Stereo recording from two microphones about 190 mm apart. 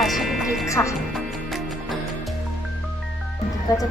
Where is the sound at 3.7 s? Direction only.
20° left (ahead or behind).